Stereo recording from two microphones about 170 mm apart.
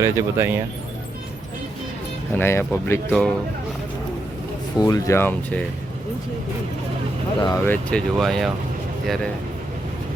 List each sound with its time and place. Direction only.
0.0 s speech: 15° right (ahead or behind)
2.3 s speech: 15° left (ahead or behind)
4.8 s speech: 20° left (ahead or behind)
7.3 s speech: 25° left (ahead or behind)
7.7 s speech: 5° left (ahead or behind)